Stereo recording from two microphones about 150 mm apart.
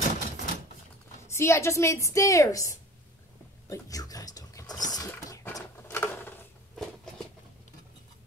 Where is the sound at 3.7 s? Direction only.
25° left (ahead or behind).